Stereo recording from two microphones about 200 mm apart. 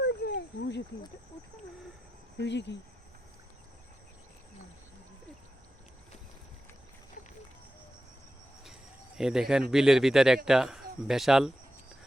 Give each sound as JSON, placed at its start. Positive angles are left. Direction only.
{"t": 0.0, "sound": "a sound", "side_deg": 60}
{"t": 2.4, "sound": "speech", "side_deg": 60}
{"t": 9.1, "sound": "speech", "side_deg": -5}